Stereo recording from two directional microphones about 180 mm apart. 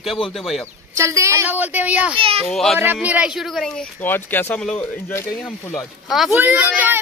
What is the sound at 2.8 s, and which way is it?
Speech, 10° right (ahead or behind).